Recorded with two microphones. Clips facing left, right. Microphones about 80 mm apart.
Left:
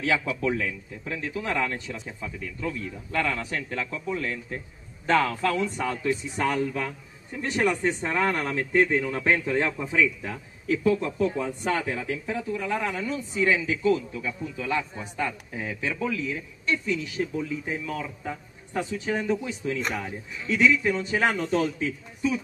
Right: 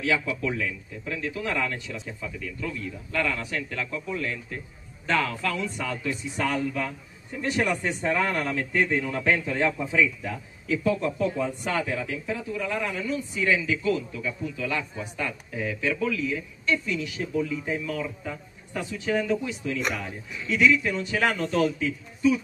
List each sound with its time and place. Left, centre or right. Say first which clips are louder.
0.0 s a man's voice: left 1 dB; left